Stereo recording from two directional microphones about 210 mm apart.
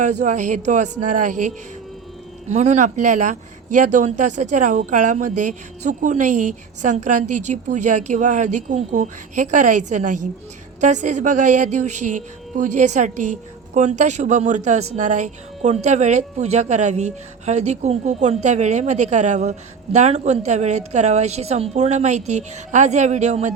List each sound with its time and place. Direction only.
0.0 s speech: 35° right (ahead or behind)